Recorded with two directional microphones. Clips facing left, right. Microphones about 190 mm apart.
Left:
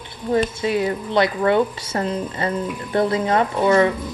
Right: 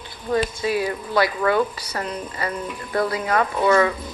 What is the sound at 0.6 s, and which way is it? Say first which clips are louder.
Speech: left 2 dB; 25° left (ahead or behind).